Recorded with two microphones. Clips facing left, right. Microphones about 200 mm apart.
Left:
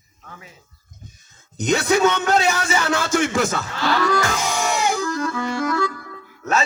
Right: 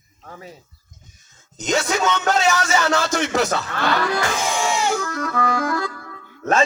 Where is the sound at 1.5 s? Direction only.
60° left (ahead or behind).